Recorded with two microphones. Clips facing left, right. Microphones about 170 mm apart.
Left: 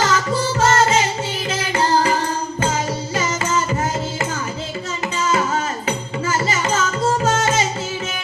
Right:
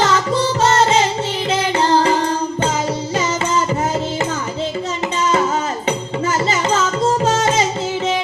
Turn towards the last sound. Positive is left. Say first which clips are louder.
# right 2 dB
turn(degrees=-30)  # may be behind; listen again after turning